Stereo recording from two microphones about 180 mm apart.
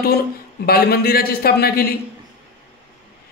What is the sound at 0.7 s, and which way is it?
Speech, 60° left (ahead or behind).